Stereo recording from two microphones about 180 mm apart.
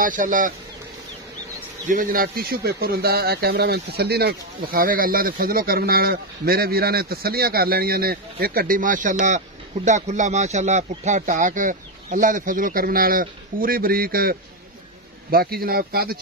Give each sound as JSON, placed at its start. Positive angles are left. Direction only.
{"t": 0.0, "sound": "speech", "side_deg": -50}
{"t": 1.9, "sound": "speech", "side_deg": -50}
{"t": 15.3, "sound": "speech", "side_deg": -55}